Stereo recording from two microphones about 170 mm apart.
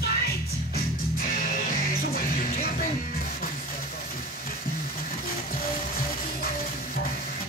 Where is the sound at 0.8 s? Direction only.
55° left (ahead or behind).